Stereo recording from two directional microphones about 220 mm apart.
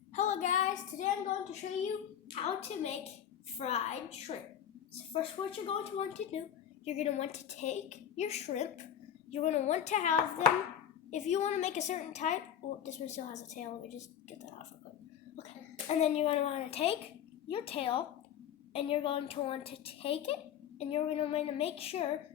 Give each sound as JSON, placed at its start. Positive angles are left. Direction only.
{"t": 0.1, "sound": "child singing", "side_deg": 35}
{"t": 2.3, "sound": "a woman's voice", "side_deg": 30}
{"t": 15.9, "sound": "a woman's voice", "side_deg": 30}